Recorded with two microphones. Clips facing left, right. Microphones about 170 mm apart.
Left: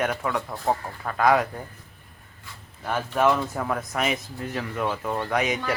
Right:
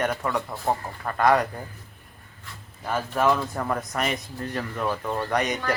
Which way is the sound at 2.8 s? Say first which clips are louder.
Left 1 dB; centre (ahead or behind).